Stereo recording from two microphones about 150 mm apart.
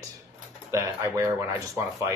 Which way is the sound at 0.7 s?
20° right (ahead or behind).